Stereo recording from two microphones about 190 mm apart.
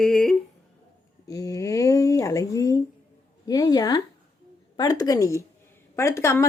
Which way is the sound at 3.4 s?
20° left (ahead or behind).